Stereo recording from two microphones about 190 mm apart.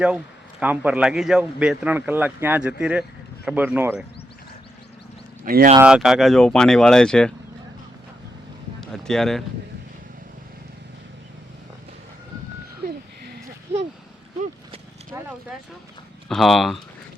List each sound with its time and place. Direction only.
0.6 s speech: 10° right (ahead or behind)
5.5 s speech: 50° right (ahead or behind)
5.8 s speech: 5° right (ahead or behind)
8.8 s boat: 5° left (ahead or behind)
12.8 s a sound: 55° right (ahead or behind)
15.1 s vehicle: 15° right (ahead or behind)
16.3 s speech: centre (ahead or behind)